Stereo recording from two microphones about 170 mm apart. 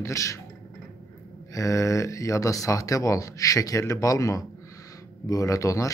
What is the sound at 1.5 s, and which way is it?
Speech, 20° left (ahead or behind).